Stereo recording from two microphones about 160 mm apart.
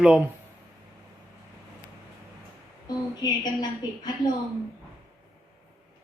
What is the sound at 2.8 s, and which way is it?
A woman's voice, 25° left (ahead or behind).